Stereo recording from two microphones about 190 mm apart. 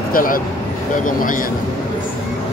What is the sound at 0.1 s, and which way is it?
A man's voice, 45° left (ahead or behind).